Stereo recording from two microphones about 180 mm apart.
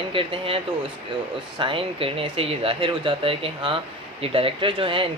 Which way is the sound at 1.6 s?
30° right (ahead or behind).